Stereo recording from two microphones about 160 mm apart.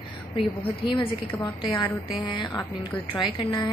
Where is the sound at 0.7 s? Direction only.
35° left (ahead or behind).